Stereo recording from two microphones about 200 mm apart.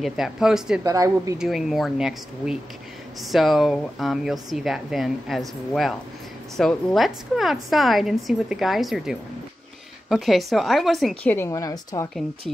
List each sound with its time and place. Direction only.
0.0 s speech: centre (ahead or behind)
0.8 s speech: 15° right (ahead or behind)
1.4 s speech: centre (ahead or behind); by 12.1 s 15° left (ahead or behind)